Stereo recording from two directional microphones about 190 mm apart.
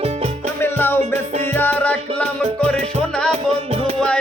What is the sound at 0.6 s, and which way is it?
Music, 10° left (ahead or behind).